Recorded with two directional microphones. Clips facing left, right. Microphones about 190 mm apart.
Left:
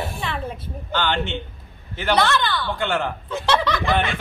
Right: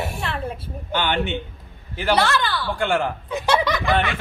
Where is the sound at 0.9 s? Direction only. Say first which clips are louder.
Right 1 dB; 15° right (ahead or behind).